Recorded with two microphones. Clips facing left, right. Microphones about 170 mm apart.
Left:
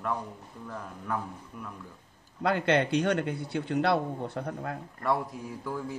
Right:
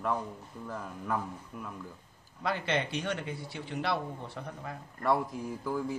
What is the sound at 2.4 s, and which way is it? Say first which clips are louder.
A man's voice: left 6 dB; 60° left (ahead or behind).